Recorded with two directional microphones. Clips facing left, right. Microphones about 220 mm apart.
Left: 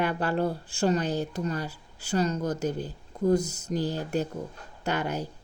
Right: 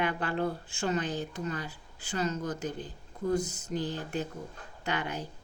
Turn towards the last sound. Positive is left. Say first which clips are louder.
# left 5 dB
turn(degrees=40)  # may be behind; listen again after turning